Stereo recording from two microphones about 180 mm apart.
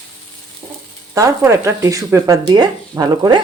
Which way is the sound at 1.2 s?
15° right (ahead or behind).